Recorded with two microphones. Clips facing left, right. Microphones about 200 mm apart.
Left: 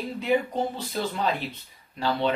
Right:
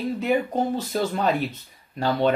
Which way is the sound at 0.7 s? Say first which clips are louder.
Right 5 dB; 50° right (ahead or behind).